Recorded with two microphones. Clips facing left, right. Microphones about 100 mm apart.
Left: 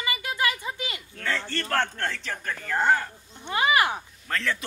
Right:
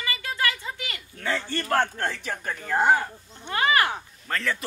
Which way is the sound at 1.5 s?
10° right (ahead or behind).